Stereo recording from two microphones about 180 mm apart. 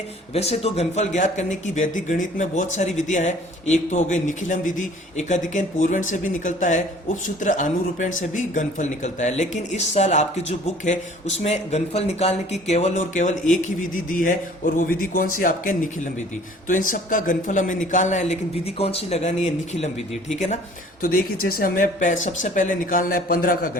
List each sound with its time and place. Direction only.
0.3 s a man's voice: 35° left (ahead or behind)
21.0 s a man's voice: 50° left (ahead or behind)